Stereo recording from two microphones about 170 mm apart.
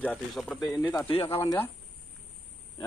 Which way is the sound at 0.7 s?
20° left (ahead or behind).